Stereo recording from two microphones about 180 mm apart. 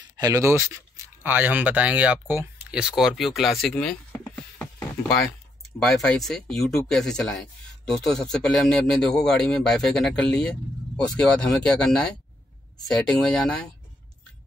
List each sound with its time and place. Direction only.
0.2 s speech: 15° right (ahead or behind); by 4.0 s 5° left (ahead or behind)
4.1 s a sound: 15° left (ahead or behind)
5.8 s speech: centre (ahead or behind)